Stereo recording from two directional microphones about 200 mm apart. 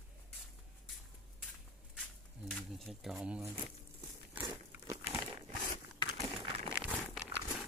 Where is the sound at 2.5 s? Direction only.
Centre (ahead or behind).